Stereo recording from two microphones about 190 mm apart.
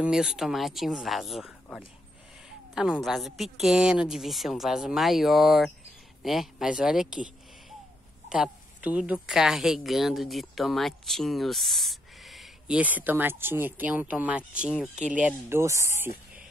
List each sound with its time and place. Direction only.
0.0 s a woman's voice: 5° right (ahead or behind)
8.3 s a woman's voice: 5° right (ahead or behind)